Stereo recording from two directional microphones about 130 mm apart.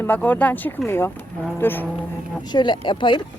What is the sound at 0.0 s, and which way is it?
Speech, 15° left (ahead or behind).